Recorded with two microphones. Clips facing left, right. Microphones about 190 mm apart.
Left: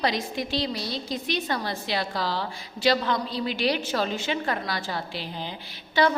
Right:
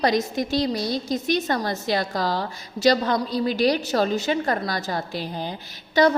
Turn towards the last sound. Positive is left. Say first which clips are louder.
# right 4 dB
turn(degrees=-40)  # may be behind; listen again after turning